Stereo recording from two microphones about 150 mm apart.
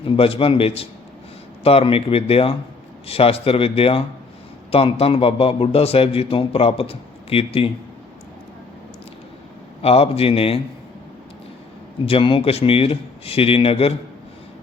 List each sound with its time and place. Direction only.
0.0 s a man's voice: 40° left (ahead or behind)
9.8 s a man's voice: 40° left (ahead or behind)
12.0 s a man's voice: 35° left (ahead or behind)